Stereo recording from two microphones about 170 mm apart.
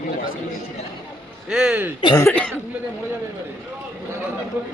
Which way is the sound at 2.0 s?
25° left (ahead or behind).